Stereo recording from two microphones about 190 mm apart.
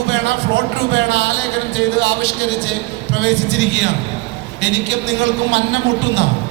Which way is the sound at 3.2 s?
65° right (ahead or behind).